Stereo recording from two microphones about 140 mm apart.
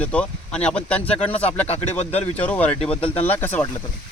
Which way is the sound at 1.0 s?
45° left (ahead or behind).